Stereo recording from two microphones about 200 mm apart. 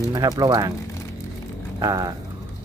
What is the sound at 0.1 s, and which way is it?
Speech, 20° right (ahead or behind).